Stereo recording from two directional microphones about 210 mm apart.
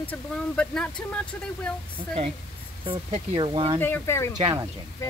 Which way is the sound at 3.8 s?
10° left (ahead or behind).